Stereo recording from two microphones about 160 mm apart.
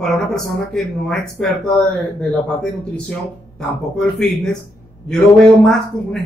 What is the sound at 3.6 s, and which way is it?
A man's voice, 5° left (ahead or behind).